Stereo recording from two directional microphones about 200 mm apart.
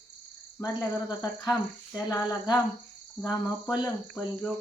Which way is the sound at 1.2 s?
5° left (ahead or behind).